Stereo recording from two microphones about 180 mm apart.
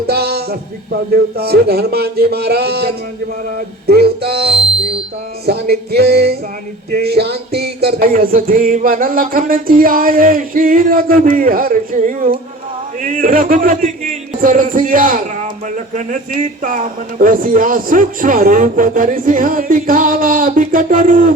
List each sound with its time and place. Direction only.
0.1 s a sound: 60° right (ahead or behind)
1.1 s speech: 60° right (ahead or behind)
6.9 s music: 60° right (ahead or behind)